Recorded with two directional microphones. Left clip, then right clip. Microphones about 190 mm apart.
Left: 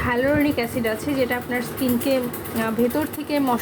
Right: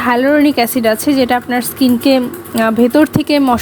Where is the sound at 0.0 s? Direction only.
45° right (ahead or behind).